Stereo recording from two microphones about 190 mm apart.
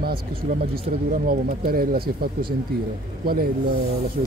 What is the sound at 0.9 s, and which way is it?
Speech, 40° right (ahead or behind).